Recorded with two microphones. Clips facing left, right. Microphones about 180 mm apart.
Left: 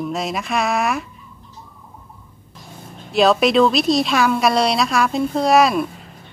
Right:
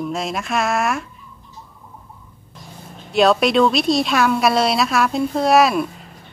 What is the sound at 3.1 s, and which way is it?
Speech, centre (ahead or behind).